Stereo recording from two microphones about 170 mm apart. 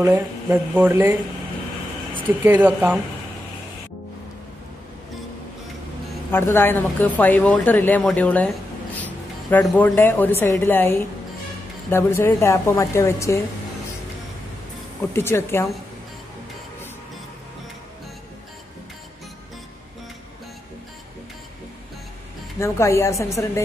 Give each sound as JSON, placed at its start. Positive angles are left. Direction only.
{"t": 0.1, "sound": "speech", "side_deg": -10}
{"t": 2.4, "sound": "speech", "side_deg": -10}
{"t": 6.3, "sound": "a woman's voice", "side_deg": 15}
{"t": 15.1, "sound": "speech", "side_deg": 15}
{"t": 22.6, "sound": "speech", "side_deg": 15}